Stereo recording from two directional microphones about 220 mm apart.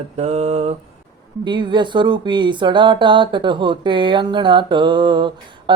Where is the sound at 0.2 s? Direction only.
30° right (ahead or behind).